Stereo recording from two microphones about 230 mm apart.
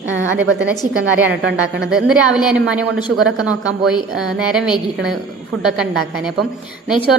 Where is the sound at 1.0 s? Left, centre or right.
Right.